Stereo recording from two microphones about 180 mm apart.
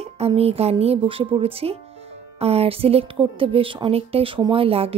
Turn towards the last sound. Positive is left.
turn(degrees=-30)  # may be behind; listen again after turning